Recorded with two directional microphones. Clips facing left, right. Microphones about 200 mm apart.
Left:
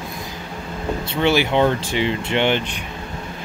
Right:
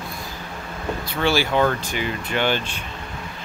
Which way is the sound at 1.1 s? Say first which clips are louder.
Left 3 dB; 20° left (ahead or behind).